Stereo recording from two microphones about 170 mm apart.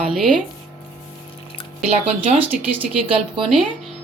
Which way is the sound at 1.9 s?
35° right (ahead or behind).